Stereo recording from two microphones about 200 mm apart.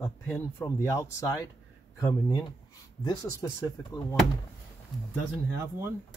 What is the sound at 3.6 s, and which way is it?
Speech, 15° left (ahead or behind).